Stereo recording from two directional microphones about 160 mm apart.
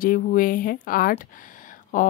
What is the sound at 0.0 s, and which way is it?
A woman's voice, 60° left (ahead or behind).